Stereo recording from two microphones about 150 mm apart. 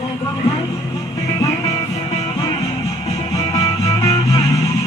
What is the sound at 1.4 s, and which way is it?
Music, 20° left (ahead or behind).